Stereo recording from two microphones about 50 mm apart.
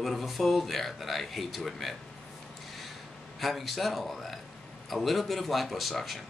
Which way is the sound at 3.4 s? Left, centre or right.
Centre.